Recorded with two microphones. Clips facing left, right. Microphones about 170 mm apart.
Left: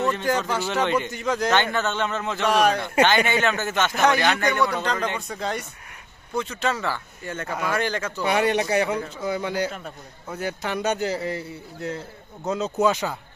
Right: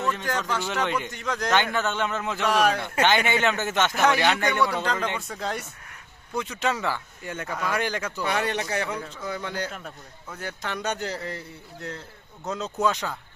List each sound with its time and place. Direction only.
0.3 s a man's voice: 10° left (ahead or behind)
1.5 s a man's voice: 10° right (ahead or behind)
3.2 s speech: 20° right (ahead or behind)
3.9 s a man's voice: 5° right (ahead or behind)
6.3 s speech: 15° right (ahead or behind)
7.4 s a man's voice: 10° left (ahead or behind)
7.7 s speech: 10° right (ahead or behind)
8.2 s a man's voice: 15° left (ahead or behind)